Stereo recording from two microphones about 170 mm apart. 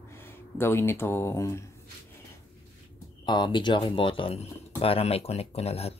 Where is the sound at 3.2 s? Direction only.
25° left (ahead or behind).